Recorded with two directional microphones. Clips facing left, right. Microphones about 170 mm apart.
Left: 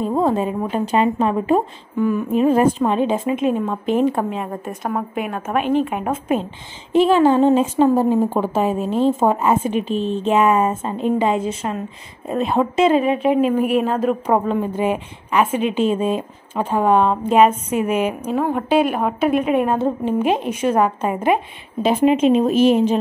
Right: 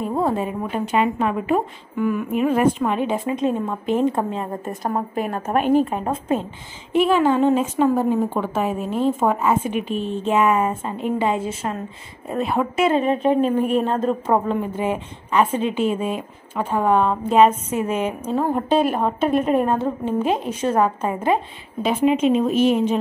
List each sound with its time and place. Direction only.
0.0 s a woman's voice: 20° left (ahead or behind)
4.5 s a woman's voice: centre (ahead or behind)
5.5 s a woman's voice: 45° right (ahead or behind)
5.9 s speech: 15° left (ahead or behind)
6.9 s a woman's voice: 30° left (ahead or behind)
12.9 s a woman's voice: 5° left (ahead or behind)
14.2 s a woman's voice: 20° left (ahead or behind)
22.7 s speech: 30° left (ahead or behind)